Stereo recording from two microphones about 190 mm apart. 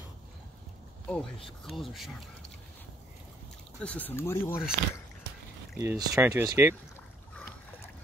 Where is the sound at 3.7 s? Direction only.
5° left (ahead or behind).